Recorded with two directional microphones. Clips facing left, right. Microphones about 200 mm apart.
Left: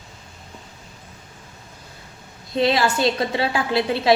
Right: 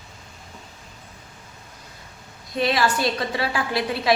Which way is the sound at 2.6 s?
25° left (ahead or behind).